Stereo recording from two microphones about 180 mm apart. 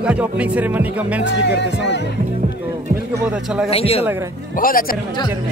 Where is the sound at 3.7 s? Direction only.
35° left (ahead or behind).